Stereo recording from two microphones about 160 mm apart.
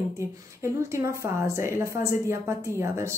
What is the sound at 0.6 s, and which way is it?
A woman's voice, 15° right (ahead or behind).